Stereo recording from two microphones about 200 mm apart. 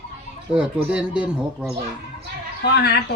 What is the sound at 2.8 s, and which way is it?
Speech, 50° left (ahead or behind).